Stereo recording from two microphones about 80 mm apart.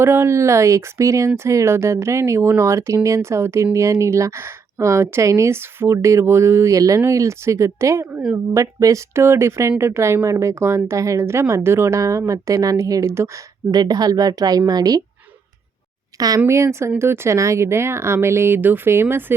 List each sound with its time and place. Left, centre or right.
0.0 s speech: right
8.1 s speech: centre
8.5 s speech: right
13.7 s speech: right
16.1 s speech: right
16.5 s speech: right